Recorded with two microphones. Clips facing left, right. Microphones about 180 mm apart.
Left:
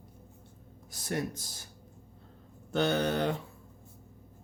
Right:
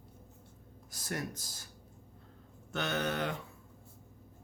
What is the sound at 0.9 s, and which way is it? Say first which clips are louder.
Speech: left 5 dB; 25° left (ahead or behind).